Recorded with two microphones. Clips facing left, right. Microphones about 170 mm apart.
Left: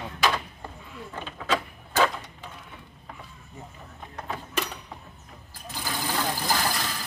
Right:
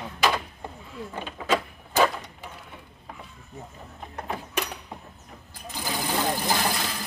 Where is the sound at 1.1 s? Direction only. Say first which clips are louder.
Right 2 dB; 10° right (ahead or behind).